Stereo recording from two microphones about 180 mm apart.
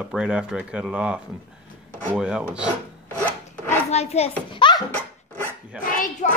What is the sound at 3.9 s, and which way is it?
Speech, 35° left (ahead or behind).